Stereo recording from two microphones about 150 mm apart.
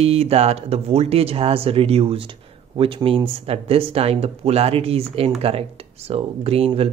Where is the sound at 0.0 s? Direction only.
45° right (ahead or behind).